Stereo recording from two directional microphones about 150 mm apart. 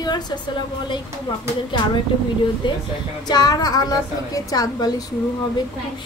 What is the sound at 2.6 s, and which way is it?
A woman's voice, 30° left (ahead or behind).